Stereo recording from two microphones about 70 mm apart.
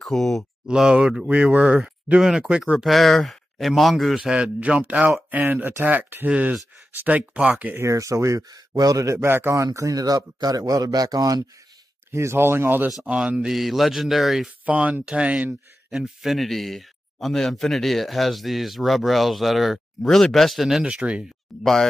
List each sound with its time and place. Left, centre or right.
0.0 s speech: centre
0.7 s speech: centre
4.6 s speech: centre
7.8 s speech: right
8.5 s a man's voice: right
9.2 s speech: right
9.8 s a man's voice: right
12.1 s speech: right
13.0 s speech: centre
14.7 s speech: right; by 20.8 s centre
20.8 s speech: centre
21.5 s speech: centre